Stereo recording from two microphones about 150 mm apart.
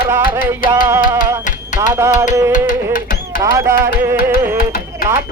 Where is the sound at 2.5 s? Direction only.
65° left (ahead or behind).